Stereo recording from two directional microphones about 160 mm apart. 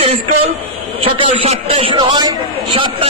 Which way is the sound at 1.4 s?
35° right (ahead or behind).